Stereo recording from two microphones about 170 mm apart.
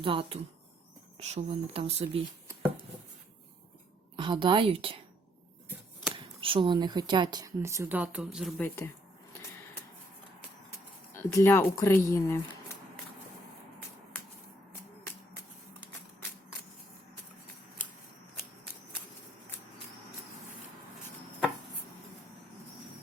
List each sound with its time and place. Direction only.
0.0 s speech: 30° right (ahead or behind)
4.2 s speech: 30° right (ahead or behind)
6.1 s speech: 30° right (ahead or behind); by 8.5 s 5° right (ahead or behind)
8.5 s speech: 10° left (ahead or behind)
11.1 s speech: 15° left (ahead or behind)